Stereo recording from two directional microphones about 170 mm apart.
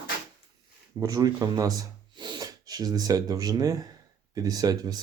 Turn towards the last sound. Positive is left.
turn(degrees=-20)  # may be behind; listen again after turning